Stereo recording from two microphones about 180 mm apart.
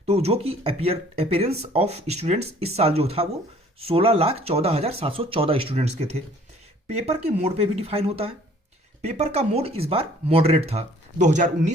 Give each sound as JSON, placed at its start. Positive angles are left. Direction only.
{"t": 0.0, "sound": "speech", "side_deg": -35}